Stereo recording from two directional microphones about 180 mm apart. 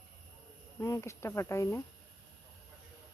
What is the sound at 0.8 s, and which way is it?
Speech, 15° left (ahead or behind).